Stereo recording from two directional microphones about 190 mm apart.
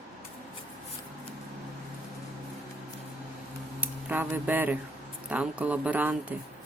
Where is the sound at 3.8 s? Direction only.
10° right (ahead or behind).